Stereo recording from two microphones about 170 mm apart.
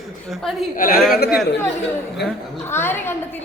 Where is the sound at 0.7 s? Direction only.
55° left (ahead or behind).